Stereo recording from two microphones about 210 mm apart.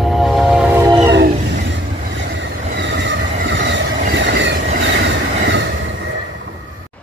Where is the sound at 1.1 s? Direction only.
55° right (ahead or behind).